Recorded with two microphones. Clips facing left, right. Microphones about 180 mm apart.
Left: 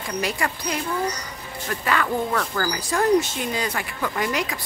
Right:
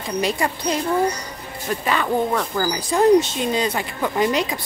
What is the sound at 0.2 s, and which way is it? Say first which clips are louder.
Speech: right 5 dB; 20° right (ahead or behind).